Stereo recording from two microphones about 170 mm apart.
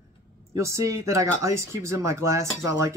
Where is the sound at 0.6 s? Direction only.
15° right (ahead or behind).